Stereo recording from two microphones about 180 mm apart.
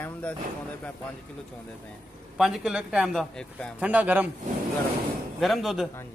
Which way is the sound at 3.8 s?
10° right (ahead or behind).